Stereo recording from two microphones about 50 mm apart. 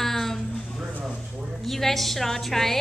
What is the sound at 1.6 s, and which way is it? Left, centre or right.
A woman's voice, centre.